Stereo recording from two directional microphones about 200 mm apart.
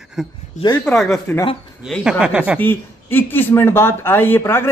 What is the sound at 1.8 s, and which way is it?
Speech, centre (ahead or behind).